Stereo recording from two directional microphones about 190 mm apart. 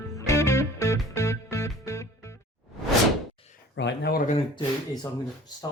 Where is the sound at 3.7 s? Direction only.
70° left (ahead or behind).